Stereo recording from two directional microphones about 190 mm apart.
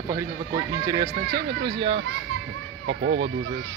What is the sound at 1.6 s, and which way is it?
Speech, 25° right (ahead or behind).